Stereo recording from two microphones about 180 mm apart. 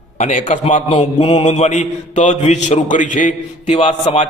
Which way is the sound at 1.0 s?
30° left (ahead or behind).